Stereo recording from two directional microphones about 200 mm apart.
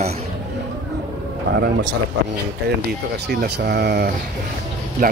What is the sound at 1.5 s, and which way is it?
Speech, 60° right (ahead or behind).